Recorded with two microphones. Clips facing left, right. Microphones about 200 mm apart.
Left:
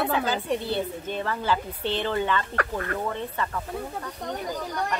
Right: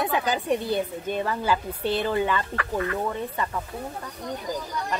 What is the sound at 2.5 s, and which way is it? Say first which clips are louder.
Speech: right 1 dB; 50° left (ahead or behind).